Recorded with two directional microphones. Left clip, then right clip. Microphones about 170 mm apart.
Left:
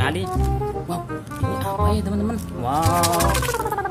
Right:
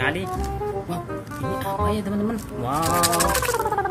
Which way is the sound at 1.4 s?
Centre (ahead or behind).